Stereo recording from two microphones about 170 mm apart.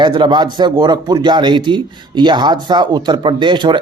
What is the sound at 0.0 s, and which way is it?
A man's voice, 25° right (ahead or behind).